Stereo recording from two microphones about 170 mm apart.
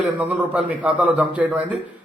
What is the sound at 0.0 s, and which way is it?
A man's voice, 10° right (ahead or behind).